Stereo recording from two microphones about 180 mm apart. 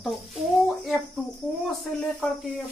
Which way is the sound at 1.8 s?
Centre (ahead or behind).